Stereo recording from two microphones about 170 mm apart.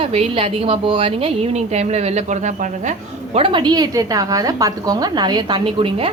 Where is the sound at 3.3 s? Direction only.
30° right (ahead or behind).